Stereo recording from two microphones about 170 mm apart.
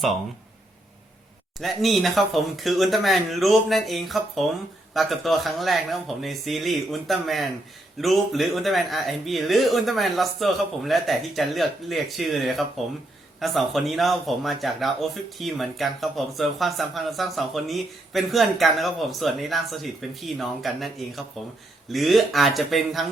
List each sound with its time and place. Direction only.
1.5 s speech: centre (ahead or behind)